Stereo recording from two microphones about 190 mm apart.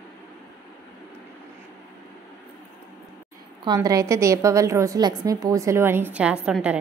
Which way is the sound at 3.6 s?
20° right (ahead or behind).